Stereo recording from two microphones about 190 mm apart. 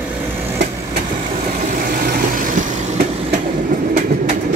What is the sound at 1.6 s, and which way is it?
Vehicle, 45° right (ahead or behind).